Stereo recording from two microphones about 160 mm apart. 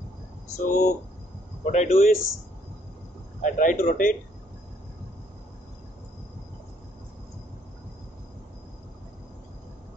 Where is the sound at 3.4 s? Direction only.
55° left (ahead or behind).